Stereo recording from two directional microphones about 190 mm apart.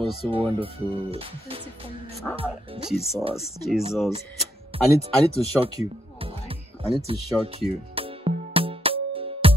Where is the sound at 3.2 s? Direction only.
30° right (ahead or behind).